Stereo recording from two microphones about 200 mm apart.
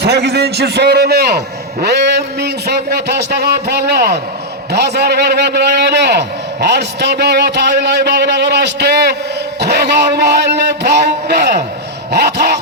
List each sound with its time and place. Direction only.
0.0 s a man's voice: 55° right (ahead or behind)